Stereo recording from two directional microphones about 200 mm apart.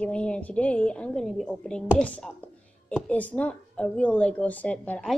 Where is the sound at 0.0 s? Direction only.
5° left (ahead or behind).